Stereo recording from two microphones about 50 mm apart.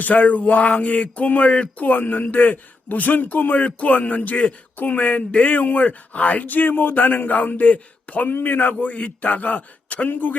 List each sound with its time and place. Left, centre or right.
0.0 s speech: left
1.9 s speech: left
8.3 s speech: left